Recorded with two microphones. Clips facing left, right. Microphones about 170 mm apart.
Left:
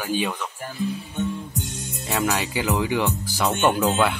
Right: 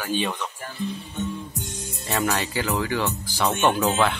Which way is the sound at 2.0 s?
10° left (ahead or behind).